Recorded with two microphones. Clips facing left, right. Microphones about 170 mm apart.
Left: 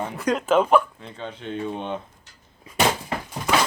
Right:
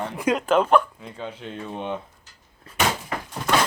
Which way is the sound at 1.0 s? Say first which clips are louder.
Right 1 dB; 5° right (ahead or behind).